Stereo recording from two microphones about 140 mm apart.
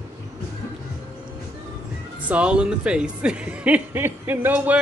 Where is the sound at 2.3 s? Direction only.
10° right (ahead or behind).